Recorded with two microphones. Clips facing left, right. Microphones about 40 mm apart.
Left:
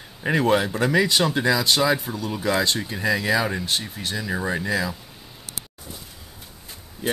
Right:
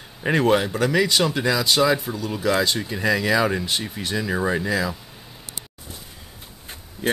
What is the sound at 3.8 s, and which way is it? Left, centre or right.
Speech, centre.